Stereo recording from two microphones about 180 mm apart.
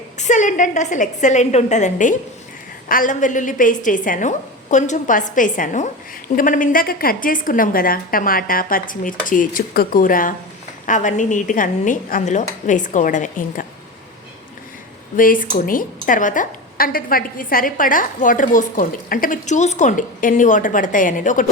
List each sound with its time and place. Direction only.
0.2 s a woman's voice: 45° left (ahead or behind)
15.1 s a woman's voice: 50° left (ahead or behind)